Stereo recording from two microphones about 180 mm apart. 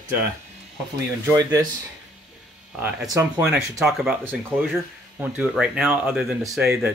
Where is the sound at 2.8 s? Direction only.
15° right (ahead or behind).